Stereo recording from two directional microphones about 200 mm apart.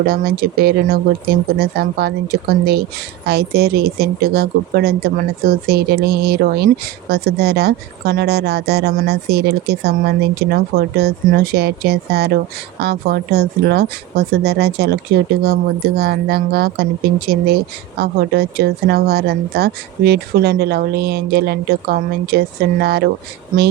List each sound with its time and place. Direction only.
0.1 s speech: 50° right (ahead or behind)
16.0 s speech: 50° right (ahead or behind)